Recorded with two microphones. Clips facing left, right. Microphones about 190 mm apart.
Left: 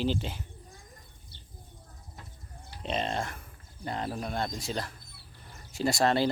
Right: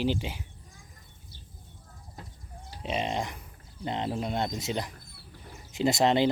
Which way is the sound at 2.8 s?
10° right (ahead or behind).